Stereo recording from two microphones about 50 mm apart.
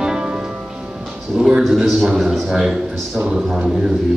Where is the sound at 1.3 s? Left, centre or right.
Centre.